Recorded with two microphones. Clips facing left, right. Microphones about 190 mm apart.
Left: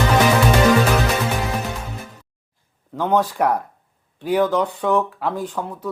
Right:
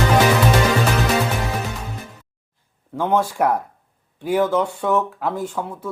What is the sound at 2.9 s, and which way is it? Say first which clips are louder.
Speech: even; 10° right (ahead or behind).